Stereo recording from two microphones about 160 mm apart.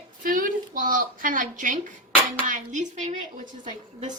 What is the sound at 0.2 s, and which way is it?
A woman's voice, 60° right (ahead or behind).